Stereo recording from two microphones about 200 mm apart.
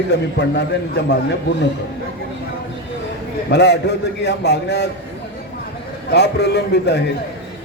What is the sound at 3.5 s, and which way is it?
A man's voice, 60° left (ahead or behind).